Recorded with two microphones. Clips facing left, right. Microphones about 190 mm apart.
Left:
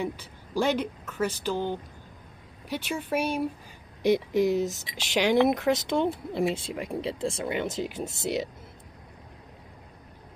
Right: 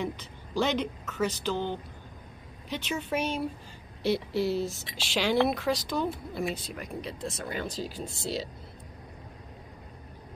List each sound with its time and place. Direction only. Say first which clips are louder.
0.0 s speech: left 2 dB; 10° left (ahead or behind)